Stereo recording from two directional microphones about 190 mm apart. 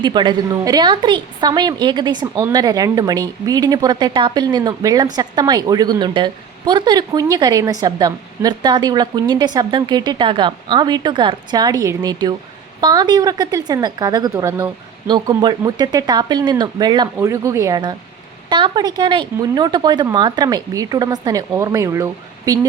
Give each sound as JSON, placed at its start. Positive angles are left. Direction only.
{"t": 0.0, "sound": "a woman's voice", "side_deg": -25}